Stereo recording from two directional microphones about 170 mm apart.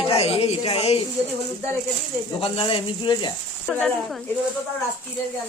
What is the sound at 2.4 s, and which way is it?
Speech, 30° left (ahead or behind).